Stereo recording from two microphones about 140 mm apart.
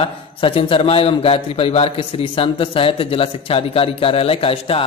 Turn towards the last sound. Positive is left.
turn(degrees=40)  # may be behind; listen again after turning